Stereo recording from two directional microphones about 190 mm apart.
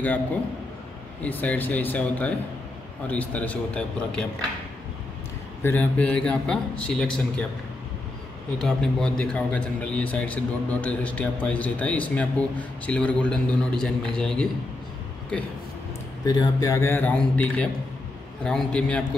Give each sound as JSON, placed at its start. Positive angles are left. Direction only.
{"t": 1.2, "sound": "a man's voice", "side_deg": 10}
{"t": 5.6, "sound": "a man's voice", "side_deg": 10}
{"t": 8.5, "sound": "a man's voice", "side_deg": 5}
{"t": 16.3, "sound": "a man's voice", "side_deg": 20}